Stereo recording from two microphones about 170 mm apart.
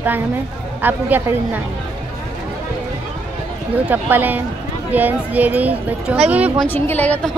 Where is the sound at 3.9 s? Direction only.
10° right (ahead or behind).